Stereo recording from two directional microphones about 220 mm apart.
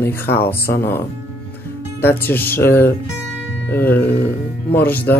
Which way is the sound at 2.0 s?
10° left (ahead or behind).